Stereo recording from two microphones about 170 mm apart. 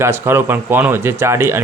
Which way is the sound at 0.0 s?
15° right (ahead or behind).